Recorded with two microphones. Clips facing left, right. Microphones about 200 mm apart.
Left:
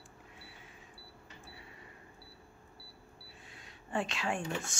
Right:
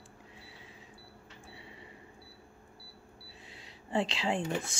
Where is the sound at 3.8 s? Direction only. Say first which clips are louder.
Right 4 dB; 20° right (ahead or behind).